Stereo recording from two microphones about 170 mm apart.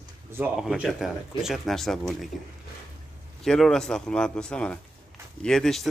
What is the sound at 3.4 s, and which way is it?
Speech, centre (ahead or behind).